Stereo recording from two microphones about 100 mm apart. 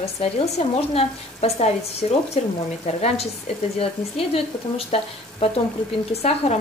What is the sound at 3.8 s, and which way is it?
Speech, 75° left (ahead or behind).